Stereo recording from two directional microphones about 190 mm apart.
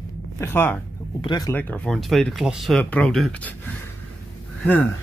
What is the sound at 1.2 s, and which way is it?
Speech, 20° left (ahead or behind).